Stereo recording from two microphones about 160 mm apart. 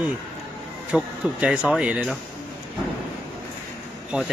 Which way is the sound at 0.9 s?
5° right (ahead or behind).